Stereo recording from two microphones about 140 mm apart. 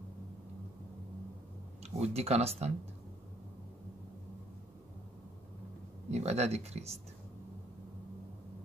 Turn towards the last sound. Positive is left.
turn(degrees=-50)  # may be behind; listen again after turning